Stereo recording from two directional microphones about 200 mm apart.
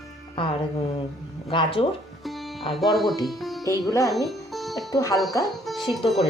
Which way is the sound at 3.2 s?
Centre (ahead or behind).